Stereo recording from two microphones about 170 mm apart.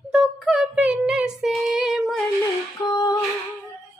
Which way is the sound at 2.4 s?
20° left (ahead or behind).